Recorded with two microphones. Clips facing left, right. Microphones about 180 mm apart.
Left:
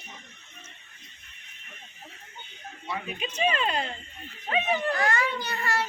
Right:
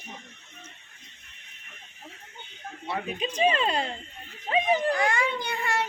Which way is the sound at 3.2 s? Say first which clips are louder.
Right 3 dB; 30° right (ahead or behind).